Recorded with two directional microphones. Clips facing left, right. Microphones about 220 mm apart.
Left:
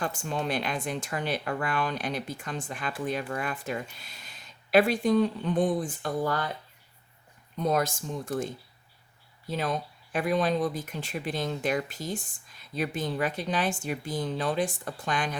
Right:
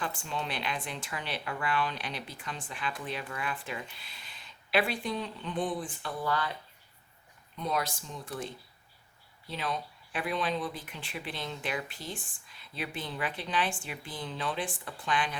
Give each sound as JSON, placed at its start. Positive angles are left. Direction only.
{"t": 0.0, "sound": "speech", "side_deg": 45}
{"t": 7.5, "sound": "speech", "side_deg": 45}